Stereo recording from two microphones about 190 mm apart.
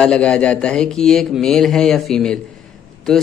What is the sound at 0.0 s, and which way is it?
Speech, 5° left (ahead or behind).